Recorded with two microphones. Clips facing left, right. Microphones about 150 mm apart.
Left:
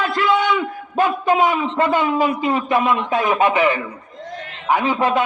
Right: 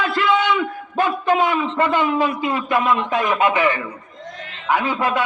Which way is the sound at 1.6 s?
20° left (ahead or behind).